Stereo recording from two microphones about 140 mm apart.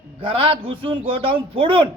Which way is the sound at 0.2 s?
40° right (ahead or behind).